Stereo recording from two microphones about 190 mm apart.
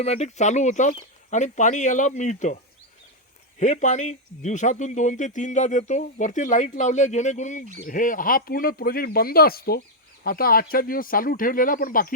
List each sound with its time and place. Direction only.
0.0 s speech: 35° left (ahead or behind)
3.6 s speech: 40° left (ahead or behind)